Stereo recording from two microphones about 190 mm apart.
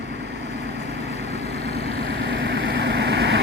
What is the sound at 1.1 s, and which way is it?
Vehicle, 35° left (ahead or behind).